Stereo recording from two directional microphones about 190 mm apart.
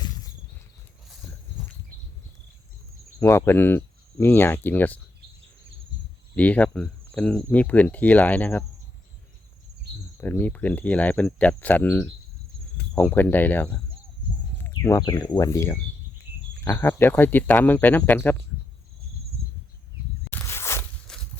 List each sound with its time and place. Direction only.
3.2 s speech: 15° left (ahead or behind)
6.3 s speech: 5° left (ahead or behind)
10.2 s speech: 10° left (ahead or behind)
20.3 s walk: 15° left (ahead or behind)